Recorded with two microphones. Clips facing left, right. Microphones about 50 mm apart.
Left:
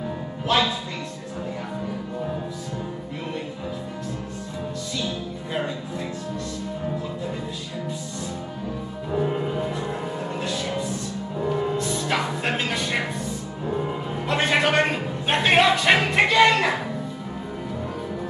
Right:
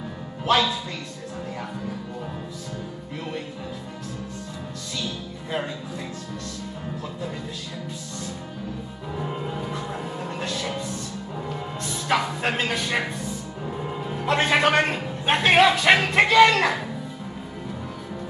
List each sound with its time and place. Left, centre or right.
0.5 s speech: centre
5.5 s music: centre
9.1 s music: centre
12.0 s music: centre
14.2 s a sound: centre
16.4 s music: centre